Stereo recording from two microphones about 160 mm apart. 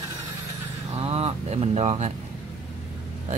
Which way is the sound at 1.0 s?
40° right (ahead or behind).